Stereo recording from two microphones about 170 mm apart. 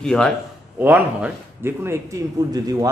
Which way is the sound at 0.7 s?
10° right (ahead or behind).